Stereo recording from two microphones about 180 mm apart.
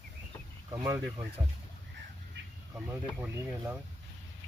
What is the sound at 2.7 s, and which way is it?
Speech, 10° right (ahead or behind).